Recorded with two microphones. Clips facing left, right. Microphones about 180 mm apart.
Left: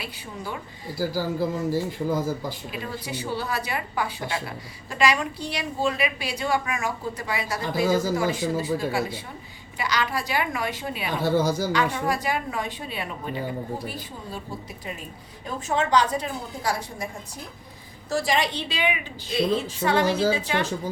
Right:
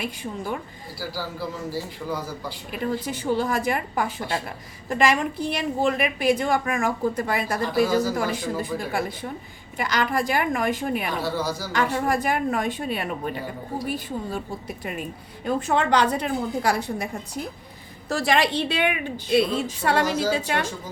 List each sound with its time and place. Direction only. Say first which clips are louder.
0.9 s a man's voice: left 6 dB; 50° left (ahead or behind)
2.7 s a woman's voice: right 5 dB; 50° right (ahead or behind)
11.2 s a man's voice: left 5 dB; 50° left (ahead or behind)
11.7 s a woman's voice: right 1 dB; 50° right (ahead or behind)
15.4 s a woman's voice: right 3 dB; 60° right (ahead or behind)
18.1 s a woman's voice: right 2 dB; 60° right (ahead or behind)
20.3 s a woman's voice: right 1 dB; 50° right (ahead or behind)